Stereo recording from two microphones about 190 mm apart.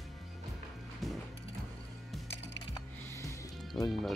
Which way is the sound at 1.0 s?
Centre (ahead or behind).